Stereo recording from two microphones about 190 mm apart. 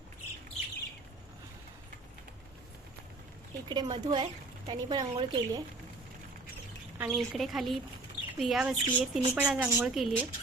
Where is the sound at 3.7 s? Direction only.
20° right (ahead or behind).